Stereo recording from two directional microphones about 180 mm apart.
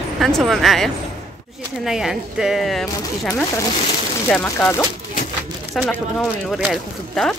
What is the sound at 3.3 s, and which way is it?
Speech, 15° left (ahead or behind).